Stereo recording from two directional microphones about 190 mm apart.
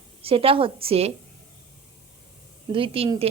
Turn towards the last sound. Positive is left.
turn(degrees=-30)  # may be behind; listen again after turning